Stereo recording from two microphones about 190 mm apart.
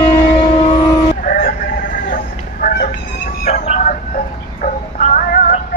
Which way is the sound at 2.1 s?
45° left (ahead or behind).